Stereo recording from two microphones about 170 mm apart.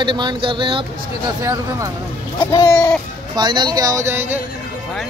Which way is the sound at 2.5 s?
20° left (ahead or behind).